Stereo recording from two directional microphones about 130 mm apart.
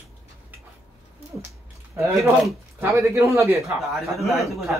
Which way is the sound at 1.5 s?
25° right (ahead or behind).